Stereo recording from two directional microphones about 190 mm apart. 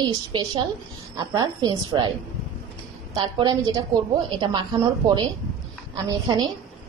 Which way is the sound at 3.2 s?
20° right (ahead or behind).